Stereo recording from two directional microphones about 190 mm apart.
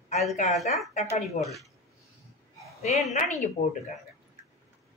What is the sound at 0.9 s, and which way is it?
Speech, 35° left (ahead or behind).